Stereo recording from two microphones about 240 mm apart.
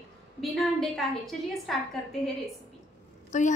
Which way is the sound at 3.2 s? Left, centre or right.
Left.